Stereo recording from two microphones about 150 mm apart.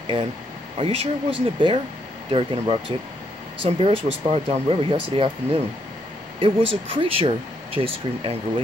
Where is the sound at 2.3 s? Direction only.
45° right (ahead or behind).